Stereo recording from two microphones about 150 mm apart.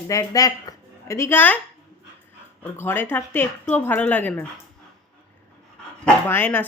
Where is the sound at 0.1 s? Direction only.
20° left (ahead or behind).